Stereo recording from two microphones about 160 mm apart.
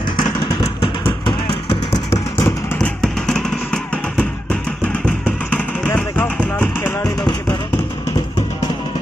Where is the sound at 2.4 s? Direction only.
15° left (ahead or behind).